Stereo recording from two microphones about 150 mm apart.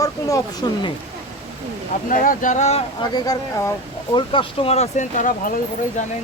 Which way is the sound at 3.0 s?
25° left (ahead or behind).